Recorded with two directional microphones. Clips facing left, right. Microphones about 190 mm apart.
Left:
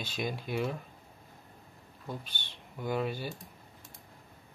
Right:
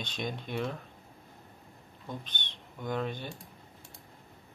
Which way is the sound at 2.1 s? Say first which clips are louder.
Even; 5° left (ahead or behind).